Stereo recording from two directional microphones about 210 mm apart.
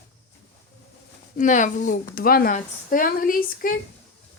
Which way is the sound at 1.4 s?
35° left (ahead or behind).